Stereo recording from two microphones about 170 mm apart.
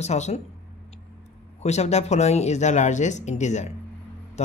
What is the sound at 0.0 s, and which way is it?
Speech, 40° left (ahead or behind).